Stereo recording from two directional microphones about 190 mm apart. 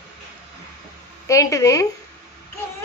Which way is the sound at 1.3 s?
15° left (ahead or behind).